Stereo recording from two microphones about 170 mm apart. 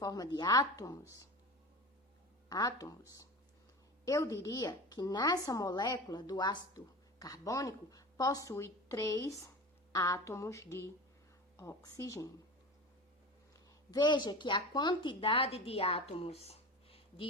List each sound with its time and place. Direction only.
0.0 s a woman's voice: 20° left (ahead or behind)
2.5 s a woman's voice: 20° left (ahead or behind)
13.9 s a woman's voice: 25° left (ahead or behind)